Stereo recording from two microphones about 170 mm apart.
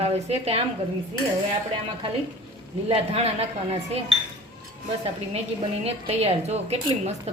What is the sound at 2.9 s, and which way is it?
Speech, 35° right (ahead or behind).